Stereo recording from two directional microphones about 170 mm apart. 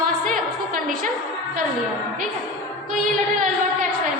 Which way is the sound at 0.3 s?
50° right (ahead or behind).